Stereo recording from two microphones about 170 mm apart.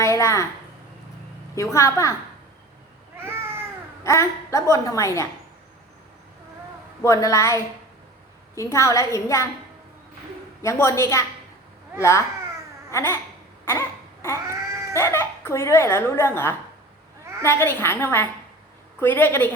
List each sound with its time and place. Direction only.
0.0 s a sound: 15° left (ahead or behind)
1.5 s speech: 15° left (ahead or behind)
3.2 s cat: 15° right (ahead or behind)
4.0 s speech: 15° left (ahead or behind)
7.0 s a woman's voice: 20° left (ahead or behind)
10.6 s speech: 15° left (ahead or behind)
12.9 s babbling: 15° left (ahead or behind)
13.7 s a sound: 15° left (ahead or behind)
14.4 s cat: 15° right (ahead or behind)
14.9 s speech: 15° left (ahead or behind)